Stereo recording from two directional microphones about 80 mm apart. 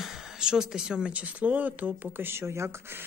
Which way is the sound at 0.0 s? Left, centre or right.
Centre.